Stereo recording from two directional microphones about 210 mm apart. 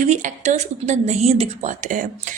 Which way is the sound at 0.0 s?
35° right (ahead or behind).